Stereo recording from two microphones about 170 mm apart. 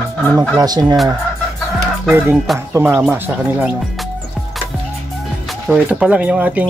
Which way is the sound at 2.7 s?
10° right (ahead or behind).